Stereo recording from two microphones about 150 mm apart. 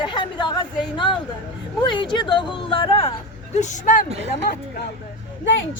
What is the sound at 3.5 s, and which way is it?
Speech, 55° left (ahead or behind).